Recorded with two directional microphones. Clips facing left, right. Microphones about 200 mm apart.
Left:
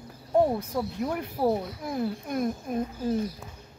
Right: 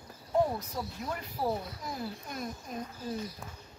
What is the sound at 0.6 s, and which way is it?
Speech, 55° left (ahead or behind).